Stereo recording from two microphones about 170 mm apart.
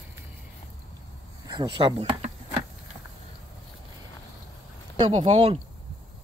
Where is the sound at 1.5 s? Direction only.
25° right (ahead or behind).